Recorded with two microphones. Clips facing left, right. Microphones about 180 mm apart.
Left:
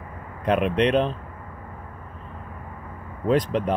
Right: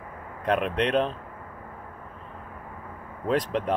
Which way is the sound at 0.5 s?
Centre (ahead or behind).